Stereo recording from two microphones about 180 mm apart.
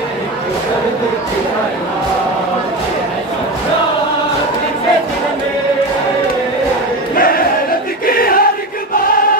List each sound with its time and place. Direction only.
7.2 s choir: 55° left (ahead or behind)
8.1 s crowd: 55° left (ahead or behind)